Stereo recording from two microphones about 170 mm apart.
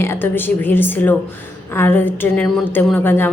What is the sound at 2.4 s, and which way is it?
Speech, centre (ahead or behind).